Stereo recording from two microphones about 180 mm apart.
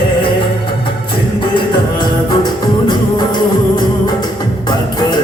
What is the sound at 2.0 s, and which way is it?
Music, 25° left (ahead or behind).